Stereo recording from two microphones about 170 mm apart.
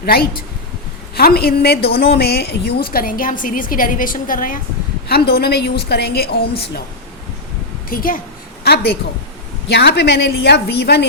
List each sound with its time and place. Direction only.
0.0 s a woman's voice: 65° left (ahead or behind)
2.9 s a woman's voice: 55° left (ahead or behind)
5.0 s a woman's voice: 65° left (ahead or behind)
7.9 s speech: 55° left (ahead or behind)
8.6 s a woman's voice: 70° left (ahead or behind)